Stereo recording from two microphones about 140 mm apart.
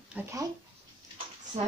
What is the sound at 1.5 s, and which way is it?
Speech, 55° right (ahead or behind).